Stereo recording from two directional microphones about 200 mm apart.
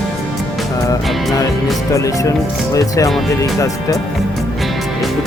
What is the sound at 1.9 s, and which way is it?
Speech, 15° left (ahead or behind).